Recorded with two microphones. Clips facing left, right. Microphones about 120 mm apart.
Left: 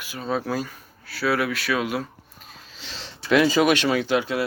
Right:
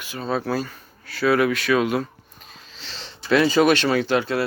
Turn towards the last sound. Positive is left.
turn(degrees=10)  # may be behind; listen again after turning